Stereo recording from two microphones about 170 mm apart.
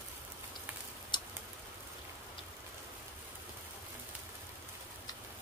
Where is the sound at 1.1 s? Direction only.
25° left (ahead or behind).